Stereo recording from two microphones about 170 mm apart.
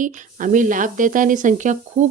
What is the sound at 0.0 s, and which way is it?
Speech, 50° right (ahead or behind).